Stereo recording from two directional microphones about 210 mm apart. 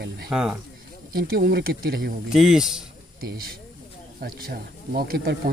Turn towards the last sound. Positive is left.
turn(degrees=-45)  # may be behind; listen again after turning